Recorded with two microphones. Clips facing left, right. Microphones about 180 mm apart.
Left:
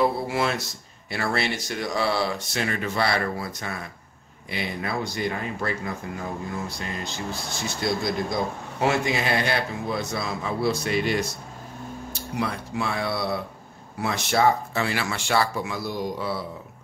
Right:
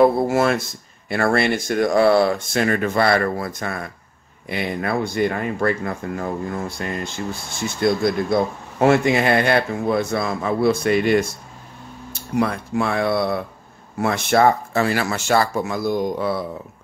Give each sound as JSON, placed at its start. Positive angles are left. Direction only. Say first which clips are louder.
{"t": 0.0, "sound": "a man's voice", "louder": "right 8 dB", "side_deg": -50}